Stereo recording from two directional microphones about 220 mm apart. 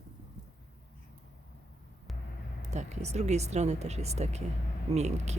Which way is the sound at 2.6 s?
30° right (ahead or behind).